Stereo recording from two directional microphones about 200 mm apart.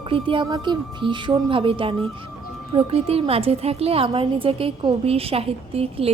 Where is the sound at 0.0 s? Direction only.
25° right (ahead or behind).